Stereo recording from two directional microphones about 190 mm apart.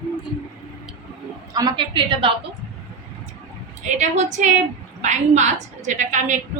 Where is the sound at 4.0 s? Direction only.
40° right (ahead or behind).